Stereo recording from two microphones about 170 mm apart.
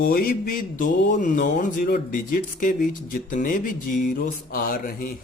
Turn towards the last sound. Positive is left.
turn(degrees=55)  # may be behind; listen again after turning